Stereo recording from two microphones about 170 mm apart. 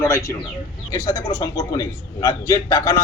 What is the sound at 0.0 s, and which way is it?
A man's voice, 20° left (ahead or behind).